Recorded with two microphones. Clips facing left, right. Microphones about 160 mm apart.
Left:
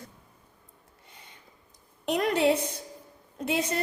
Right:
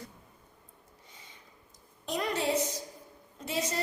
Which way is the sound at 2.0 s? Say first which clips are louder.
Left 7 dB; 65° left (ahead or behind).